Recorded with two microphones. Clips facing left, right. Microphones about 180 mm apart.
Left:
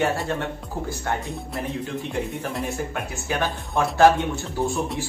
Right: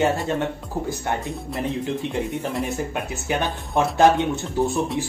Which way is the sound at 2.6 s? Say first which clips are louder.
Right 2 dB; 20° right (ahead or behind).